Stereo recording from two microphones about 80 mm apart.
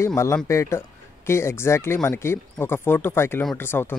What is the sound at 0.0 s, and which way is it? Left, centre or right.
Speech, left.